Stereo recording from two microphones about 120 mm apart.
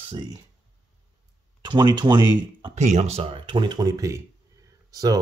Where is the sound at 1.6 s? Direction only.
40° right (ahead or behind).